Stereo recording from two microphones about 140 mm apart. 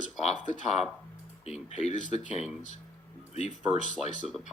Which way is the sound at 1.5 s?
55° left (ahead or behind).